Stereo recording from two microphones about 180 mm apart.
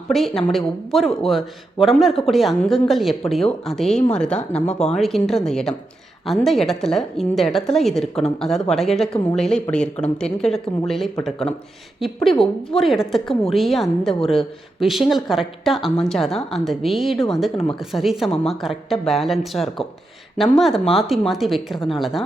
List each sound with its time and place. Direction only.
0.1 s speech: centre (ahead or behind)
4.6 s speech: 40° left (ahead or behind)
4.9 s speech: centre (ahead or behind)